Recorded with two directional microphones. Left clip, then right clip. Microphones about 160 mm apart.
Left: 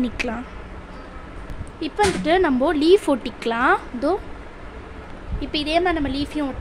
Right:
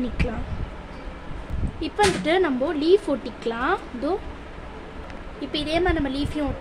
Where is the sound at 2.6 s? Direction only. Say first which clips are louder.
Left 4 dB; 35° left (ahead or behind).